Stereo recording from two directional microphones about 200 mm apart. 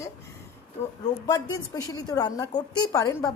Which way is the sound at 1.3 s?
20° left (ahead or behind).